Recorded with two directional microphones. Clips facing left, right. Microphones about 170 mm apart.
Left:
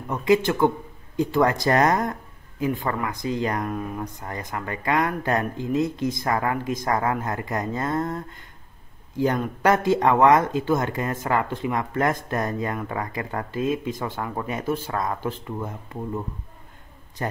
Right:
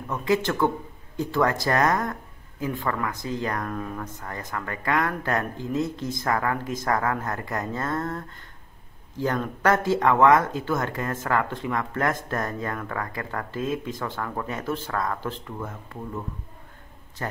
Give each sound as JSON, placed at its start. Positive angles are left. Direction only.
{"t": 0.1, "sound": "speech", "side_deg": 15}
{"t": 17.2, "sound": "a man's voice", "side_deg": 20}